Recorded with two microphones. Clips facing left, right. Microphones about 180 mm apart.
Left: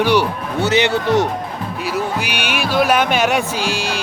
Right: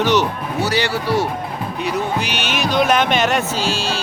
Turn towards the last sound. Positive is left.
turn(degrees=15)  # may be behind; listen again after turning